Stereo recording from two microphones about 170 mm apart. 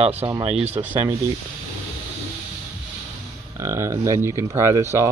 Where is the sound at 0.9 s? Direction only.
15° right (ahead or behind).